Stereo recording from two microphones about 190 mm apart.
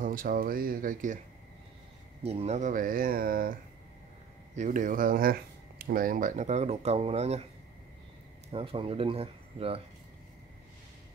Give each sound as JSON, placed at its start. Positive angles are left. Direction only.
{"t": 0.0, "sound": "speech", "side_deg": -45}
{"t": 2.2, "sound": "speech", "side_deg": -35}
{"t": 4.6, "sound": "speech", "side_deg": -40}
{"t": 8.5, "sound": "speech", "side_deg": -30}